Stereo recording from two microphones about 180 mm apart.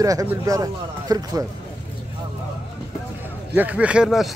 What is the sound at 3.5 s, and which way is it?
Speech, 10° right (ahead or behind).